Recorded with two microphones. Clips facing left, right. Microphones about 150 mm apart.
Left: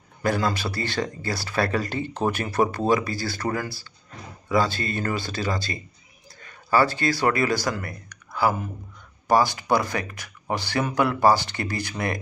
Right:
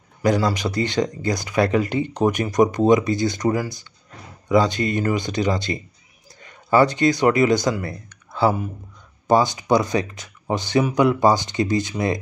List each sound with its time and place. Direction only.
0.2 s speech: 15° right (ahead or behind)